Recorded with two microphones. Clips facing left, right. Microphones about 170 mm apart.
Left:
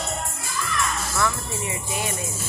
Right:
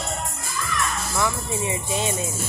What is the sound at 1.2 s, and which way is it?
Music, 20° right (ahead or behind).